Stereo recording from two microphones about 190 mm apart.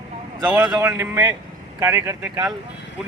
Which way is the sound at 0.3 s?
10° right (ahead or behind).